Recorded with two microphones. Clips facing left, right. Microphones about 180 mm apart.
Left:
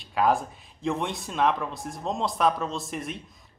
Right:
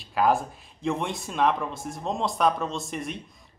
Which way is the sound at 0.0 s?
Centre (ahead or behind).